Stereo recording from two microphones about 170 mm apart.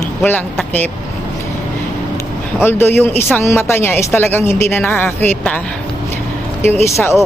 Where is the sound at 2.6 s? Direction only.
15° left (ahead or behind).